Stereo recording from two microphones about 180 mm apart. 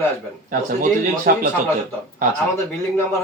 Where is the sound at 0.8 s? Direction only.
45° right (ahead or behind).